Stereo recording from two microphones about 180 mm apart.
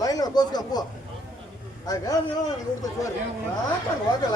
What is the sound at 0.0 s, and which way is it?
Speech, 20° left (ahead or behind).